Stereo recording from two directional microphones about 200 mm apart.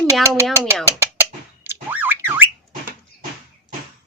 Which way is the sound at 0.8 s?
10° right (ahead or behind).